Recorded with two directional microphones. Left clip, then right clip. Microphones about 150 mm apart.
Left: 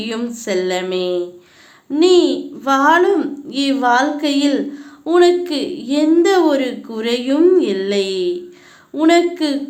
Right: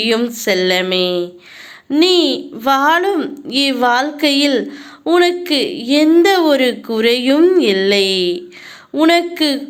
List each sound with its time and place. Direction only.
0.0 s a woman's voice: 25° right (ahead or behind)